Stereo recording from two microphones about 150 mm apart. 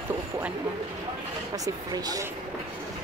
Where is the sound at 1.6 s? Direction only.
25° right (ahead or behind).